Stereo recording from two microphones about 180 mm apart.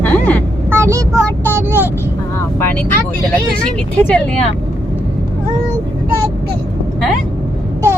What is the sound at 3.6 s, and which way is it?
Speech, 5° left (ahead or behind).